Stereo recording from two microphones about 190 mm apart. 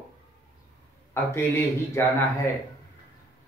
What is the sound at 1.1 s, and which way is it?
Speech, 15° left (ahead or behind).